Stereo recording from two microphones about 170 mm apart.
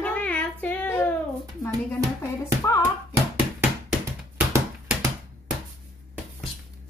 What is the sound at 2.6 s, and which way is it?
Music, 15° left (ahead or behind).